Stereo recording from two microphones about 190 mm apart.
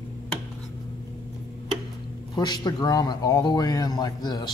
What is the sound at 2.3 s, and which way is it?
Speech, 20° left (ahead or behind).